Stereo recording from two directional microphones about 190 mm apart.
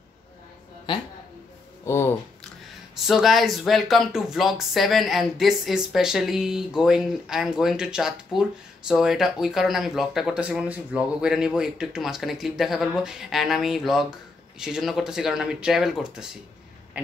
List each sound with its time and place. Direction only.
1.9 s speech: 15° left (ahead or behind)
3.1 s speech: centre (ahead or behind)
17.0 s a sound: 10° right (ahead or behind)